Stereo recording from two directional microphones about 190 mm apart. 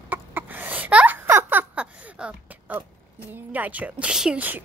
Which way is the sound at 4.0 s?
5° right (ahead or behind).